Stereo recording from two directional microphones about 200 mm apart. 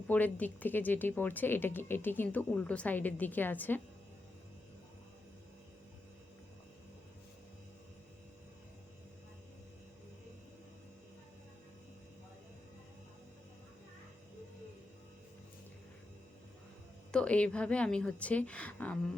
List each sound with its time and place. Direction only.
0.1 s speech: 10° left (ahead or behind)
17.1 s a woman's voice: 5° left (ahead or behind)